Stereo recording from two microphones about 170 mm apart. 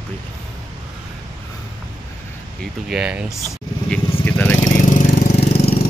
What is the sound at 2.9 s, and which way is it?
Speech, 5° right (ahead or behind).